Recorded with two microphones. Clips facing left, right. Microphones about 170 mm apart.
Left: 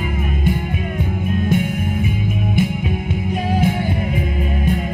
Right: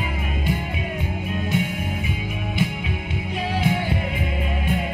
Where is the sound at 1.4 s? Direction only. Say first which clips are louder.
Left 5 dB; 50° left (ahead or behind).